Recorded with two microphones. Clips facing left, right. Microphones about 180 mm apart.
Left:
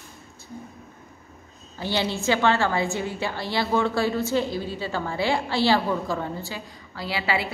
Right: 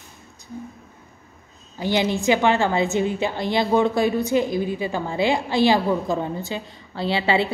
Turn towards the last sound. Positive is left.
turn(degrees=-25)  # may be behind; listen again after turning